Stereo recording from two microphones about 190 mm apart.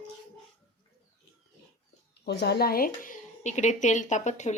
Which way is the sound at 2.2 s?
60° left (ahead or behind).